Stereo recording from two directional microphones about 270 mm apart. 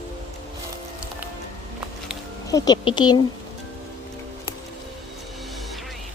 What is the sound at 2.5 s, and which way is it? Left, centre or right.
Speech, centre.